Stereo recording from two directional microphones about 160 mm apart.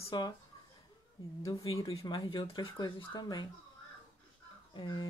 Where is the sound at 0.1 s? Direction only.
30° left (ahead or behind).